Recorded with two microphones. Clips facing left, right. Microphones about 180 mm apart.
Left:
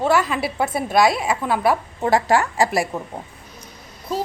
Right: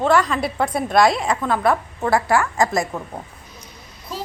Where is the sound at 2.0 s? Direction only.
20° left (ahead or behind).